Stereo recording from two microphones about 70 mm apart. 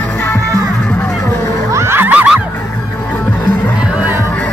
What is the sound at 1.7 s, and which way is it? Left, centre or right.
Music, right.